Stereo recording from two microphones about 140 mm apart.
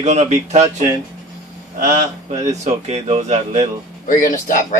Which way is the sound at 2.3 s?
50° right (ahead or behind).